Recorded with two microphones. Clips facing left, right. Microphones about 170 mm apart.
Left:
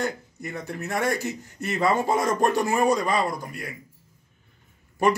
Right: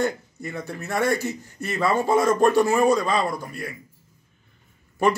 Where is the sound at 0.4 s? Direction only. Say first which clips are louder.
Left 1 dB; 20° left (ahead or behind).